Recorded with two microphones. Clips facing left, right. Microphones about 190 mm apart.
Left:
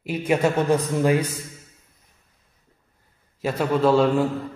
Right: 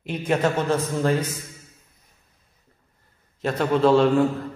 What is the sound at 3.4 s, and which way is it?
Speech, 5° left (ahead or behind).